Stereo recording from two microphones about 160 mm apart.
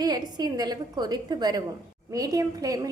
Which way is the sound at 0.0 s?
25° right (ahead or behind).